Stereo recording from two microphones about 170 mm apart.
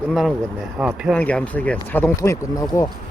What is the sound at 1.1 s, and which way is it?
Speech, 10° left (ahead or behind).